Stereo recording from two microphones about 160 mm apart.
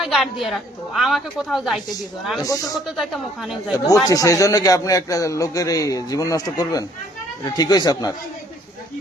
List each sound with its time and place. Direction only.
0.0 s a woman's voice: centre (ahead or behind)
2.4 s a man's voice: 20° left (ahead or behind)
2.8 s a woman's voice: centre (ahead or behind)
3.8 s a man's voice: 20° left (ahead or behind)